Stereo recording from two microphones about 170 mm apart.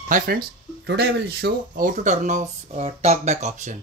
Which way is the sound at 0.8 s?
70° right (ahead or behind).